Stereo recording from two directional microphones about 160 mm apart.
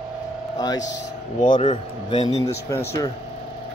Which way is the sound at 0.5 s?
20° left (ahead or behind).